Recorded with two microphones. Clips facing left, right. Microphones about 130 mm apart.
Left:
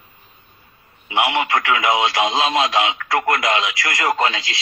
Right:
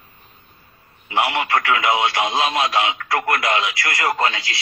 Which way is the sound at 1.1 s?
15° left (ahead or behind).